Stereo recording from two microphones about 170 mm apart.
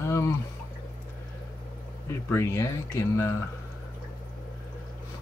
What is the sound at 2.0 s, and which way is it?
Speech, 15° left (ahead or behind).